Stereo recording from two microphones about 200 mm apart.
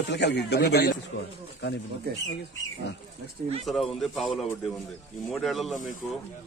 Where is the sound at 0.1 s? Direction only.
60° left (ahead or behind).